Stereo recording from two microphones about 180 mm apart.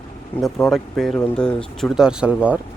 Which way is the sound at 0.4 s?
Centre (ahead or behind).